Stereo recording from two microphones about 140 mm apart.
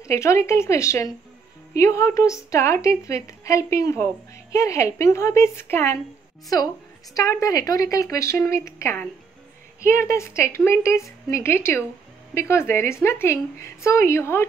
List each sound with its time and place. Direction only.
0.0 s a woman's voice: 20° left (ahead or behind)
7.2 s a woman's voice: 20° left (ahead or behind)
10.0 s a woman's voice: 20° left (ahead or behind)